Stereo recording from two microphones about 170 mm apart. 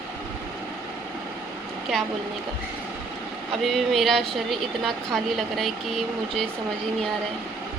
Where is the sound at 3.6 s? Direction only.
Centre (ahead or behind).